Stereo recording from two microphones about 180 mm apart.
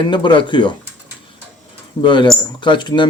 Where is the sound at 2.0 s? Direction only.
25° left (ahead or behind).